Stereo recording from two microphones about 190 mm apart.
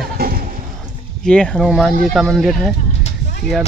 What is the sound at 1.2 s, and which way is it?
Speech, 5° left (ahead or behind).